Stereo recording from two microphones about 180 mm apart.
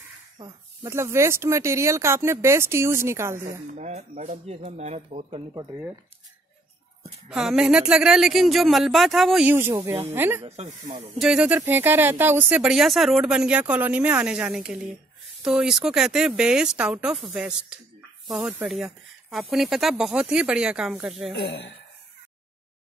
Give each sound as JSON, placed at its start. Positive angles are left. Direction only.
{"t": 0.4, "sound": "speech", "side_deg": -15}
{"t": 3.7, "sound": "speech", "side_deg": -40}
{"t": 5.5, "sound": "speech", "side_deg": -20}
{"t": 7.2, "sound": "speech", "side_deg": 0}
{"t": 10.4, "sound": "speech", "side_deg": -35}
{"t": 11.1, "sound": "speech", "side_deg": -5}
{"t": 21.3, "sound": "speech", "side_deg": 85}